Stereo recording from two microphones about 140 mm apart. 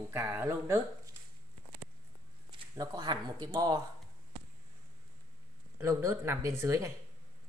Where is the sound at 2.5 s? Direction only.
30° right (ahead or behind).